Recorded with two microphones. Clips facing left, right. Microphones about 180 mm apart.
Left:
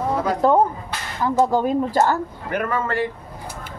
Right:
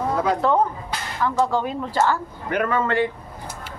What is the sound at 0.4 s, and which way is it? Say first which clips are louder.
Speech: left 3 dB; 40° left (ahead or behind).